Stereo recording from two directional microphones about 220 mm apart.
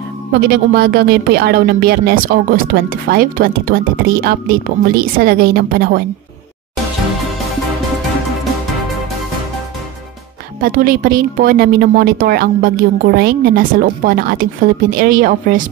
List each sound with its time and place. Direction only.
0.3 s speech: 45° right (ahead or behind)
10.6 s a woman's voice: 40° right (ahead or behind)